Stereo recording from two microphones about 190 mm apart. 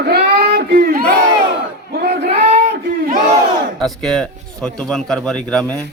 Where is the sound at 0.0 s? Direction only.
55° right (ahead or behind).